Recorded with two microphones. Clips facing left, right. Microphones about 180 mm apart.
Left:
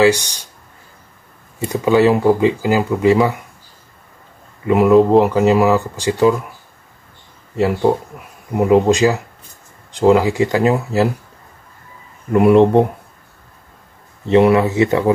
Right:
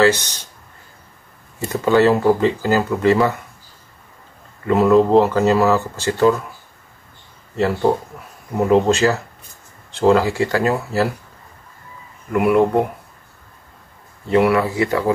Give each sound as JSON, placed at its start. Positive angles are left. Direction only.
{"t": 0.0, "sound": "speech", "side_deg": 15}
{"t": 1.7, "sound": "speech", "side_deg": 15}
{"t": 4.6, "sound": "speech", "side_deg": 15}
{"t": 7.8, "sound": "speech", "side_deg": 10}
{"t": 12.3, "sound": "speech", "side_deg": 25}
{"t": 14.2, "sound": "speech", "side_deg": 25}